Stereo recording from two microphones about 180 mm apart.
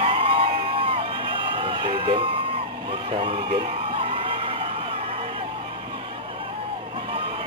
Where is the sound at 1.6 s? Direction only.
30° right (ahead or behind).